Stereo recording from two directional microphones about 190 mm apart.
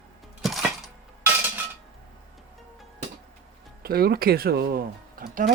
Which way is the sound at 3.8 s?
50° right (ahead or behind).